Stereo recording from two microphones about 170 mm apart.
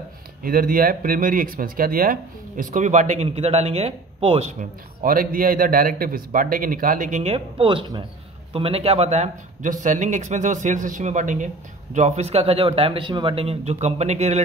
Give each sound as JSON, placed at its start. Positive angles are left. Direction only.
{"t": 0.4, "sound": "speech", "side_deg": -55}
{"t": 5.0, "sound": "a man's voice", "side_deg": -55}